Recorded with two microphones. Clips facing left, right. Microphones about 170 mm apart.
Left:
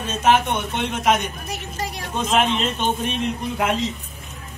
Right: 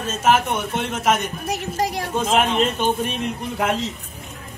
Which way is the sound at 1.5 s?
45° right (ahead or behind).